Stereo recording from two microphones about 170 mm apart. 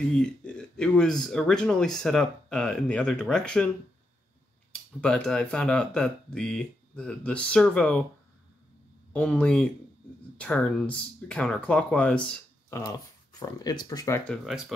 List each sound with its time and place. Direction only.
0.1 s speech: 5° left (ahead or behind)
5.0 s speech: 5° left (ahead or behind)
9.1 s speech: 5° left (ahead or behind)
12.7 s speech: 20° left (ahead or behind)
14.3 s speech: centre (ahead or behind)